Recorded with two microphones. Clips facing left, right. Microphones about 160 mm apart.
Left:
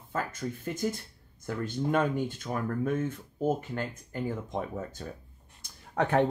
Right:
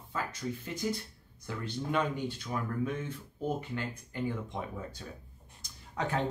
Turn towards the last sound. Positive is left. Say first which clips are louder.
# left 7 dB
turn(degrees=60)  # may be behind; listen again after turning